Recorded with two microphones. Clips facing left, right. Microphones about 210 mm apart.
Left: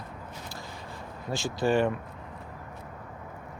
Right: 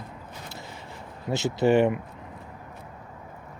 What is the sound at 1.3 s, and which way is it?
Speech, 20° right (ahead or behind).